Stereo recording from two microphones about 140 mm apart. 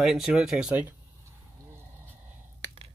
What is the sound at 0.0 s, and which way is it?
Speech, centre (ahead or behind).